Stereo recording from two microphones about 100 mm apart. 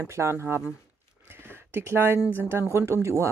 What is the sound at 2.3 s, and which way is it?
Speech, 25° right (ahead or behind).